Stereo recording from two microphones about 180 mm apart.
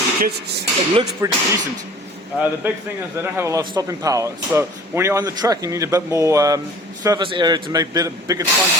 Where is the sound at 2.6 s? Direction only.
10° right (ahead or behind).